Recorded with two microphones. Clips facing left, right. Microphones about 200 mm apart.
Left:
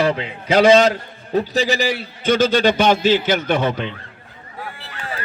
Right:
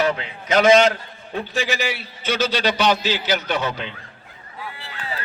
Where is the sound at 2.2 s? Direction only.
50° left (ahead or behind).